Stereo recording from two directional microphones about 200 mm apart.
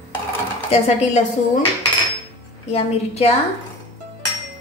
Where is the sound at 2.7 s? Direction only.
30° left (ahead or behind).